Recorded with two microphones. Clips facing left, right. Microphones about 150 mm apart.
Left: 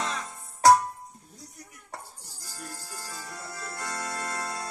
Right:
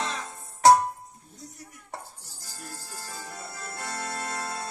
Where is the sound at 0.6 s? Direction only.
25° right (ahead or behind).